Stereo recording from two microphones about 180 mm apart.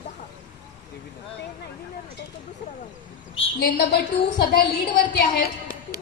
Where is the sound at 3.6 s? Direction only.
60° left (ahead or behind).